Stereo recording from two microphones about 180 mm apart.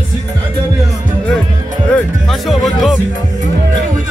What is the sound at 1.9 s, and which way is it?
Music, centre (ahead or behind).